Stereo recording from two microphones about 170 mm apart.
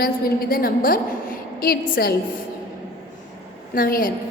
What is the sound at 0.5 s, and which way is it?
A woman's voice, 60° left (ahead or behind).